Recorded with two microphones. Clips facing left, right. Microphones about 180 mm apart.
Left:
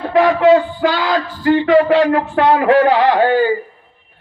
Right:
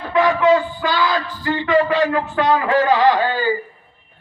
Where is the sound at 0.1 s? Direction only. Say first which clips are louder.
Left 4 dB; 65° left (ahead or behind).